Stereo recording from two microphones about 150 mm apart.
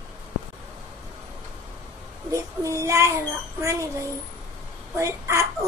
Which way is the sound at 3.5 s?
20° right (ahead or behind).